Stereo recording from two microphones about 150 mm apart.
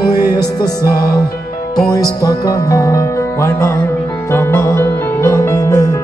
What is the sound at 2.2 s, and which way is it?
Music, 25° left (ahead or behind).